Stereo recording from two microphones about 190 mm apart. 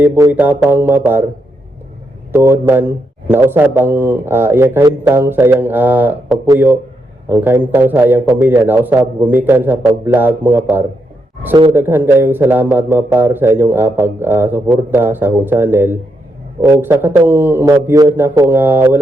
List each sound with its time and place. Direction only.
0.0 s a man's voice: 10° right (ahead or behind)
2.3 s a man's voice: 15° right (ahead or behind)